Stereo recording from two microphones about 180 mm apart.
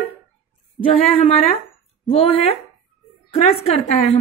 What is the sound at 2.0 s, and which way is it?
A woman's voice, 35° left (ahead or behind).